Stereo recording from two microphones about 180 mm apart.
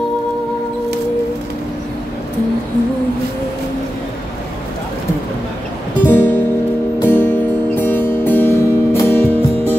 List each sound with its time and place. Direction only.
6.0 s music: 10° left (ahead or behind)